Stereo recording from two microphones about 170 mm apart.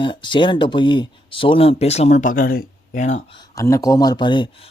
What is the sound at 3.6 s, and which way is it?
Speech, 20° left (ahead or behind).